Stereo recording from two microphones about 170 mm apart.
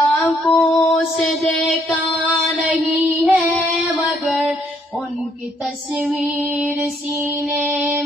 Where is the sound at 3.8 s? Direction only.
5° right (ahead or behind).